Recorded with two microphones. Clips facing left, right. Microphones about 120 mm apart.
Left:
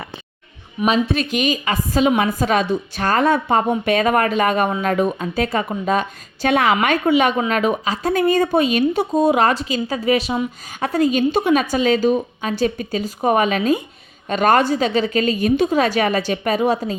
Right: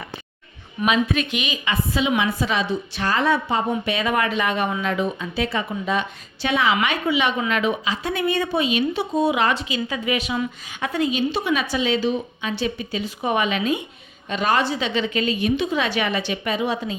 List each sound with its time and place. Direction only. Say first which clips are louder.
0.9 s a woman's voice: left 3 dB; 35° left (ahead or behind)